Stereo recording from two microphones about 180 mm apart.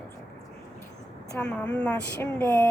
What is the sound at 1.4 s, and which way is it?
Speech, 5° left (ahead or behind).